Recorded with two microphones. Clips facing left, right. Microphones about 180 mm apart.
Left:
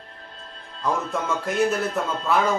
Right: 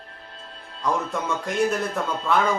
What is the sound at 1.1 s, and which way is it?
Speech, centre (ahead or behind).